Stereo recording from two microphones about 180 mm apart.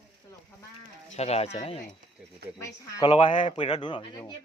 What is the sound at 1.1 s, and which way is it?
Speech, 35° left (ahead or behind).